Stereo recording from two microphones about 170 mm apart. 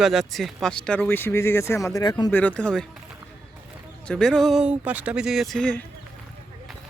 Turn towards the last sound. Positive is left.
turn(degrees=5)  # may be behind; listen again after turning